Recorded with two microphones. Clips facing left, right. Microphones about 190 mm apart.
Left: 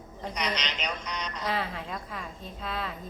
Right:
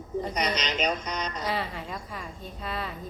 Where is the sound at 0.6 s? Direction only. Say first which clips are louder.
Right 6 dB; 45° right (ahead or behind).